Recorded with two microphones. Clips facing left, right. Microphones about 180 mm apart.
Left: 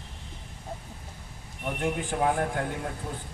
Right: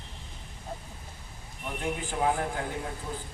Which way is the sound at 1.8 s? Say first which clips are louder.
Left 2 dB; 55° left (ahead or behind).